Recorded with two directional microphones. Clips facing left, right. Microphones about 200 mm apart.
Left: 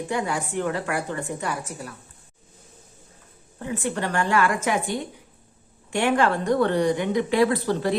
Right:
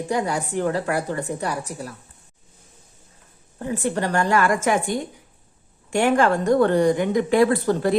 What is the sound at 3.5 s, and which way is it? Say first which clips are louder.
Speech: right 3 dB; 40° right (ahead or behind).